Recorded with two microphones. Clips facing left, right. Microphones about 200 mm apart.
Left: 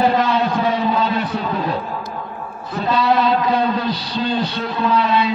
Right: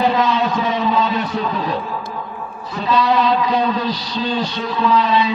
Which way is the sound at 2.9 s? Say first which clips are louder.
Even; 50° left (ahead or behind).